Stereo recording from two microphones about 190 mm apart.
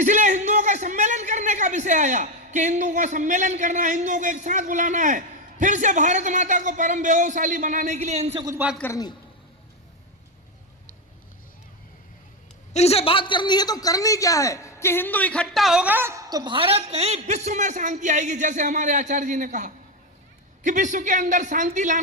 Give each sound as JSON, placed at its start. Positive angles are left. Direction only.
{"t": 0.0, "sound": "a man's voice", "side_deg": -40}
{"t": 8.8, "sound": "a man's voice", "side_deg": 15}
{"t": 12.7, "sound": "a man's voice", "side_deg": 35}